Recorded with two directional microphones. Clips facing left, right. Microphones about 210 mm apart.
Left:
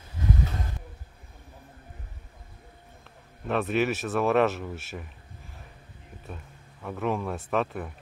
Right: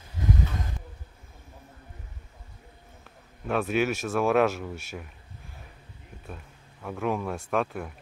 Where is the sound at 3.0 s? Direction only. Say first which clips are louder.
Even; centre (ahead or behind).